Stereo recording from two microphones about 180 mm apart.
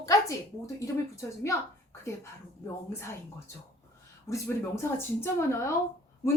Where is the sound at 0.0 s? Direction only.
20° left (ahead or behind).